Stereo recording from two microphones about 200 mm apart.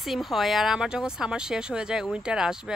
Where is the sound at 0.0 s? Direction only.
Centre (ahead or behind).